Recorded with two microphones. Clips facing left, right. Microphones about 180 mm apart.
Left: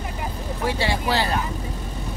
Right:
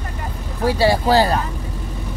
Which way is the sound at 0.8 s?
40° right (ahead or behind).